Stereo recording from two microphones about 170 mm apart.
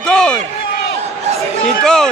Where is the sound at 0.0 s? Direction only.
5° left (ahead or behind).